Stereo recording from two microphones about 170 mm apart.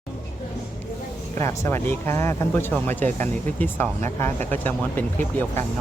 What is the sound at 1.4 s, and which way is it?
Speech, 15° left (ahead or behind).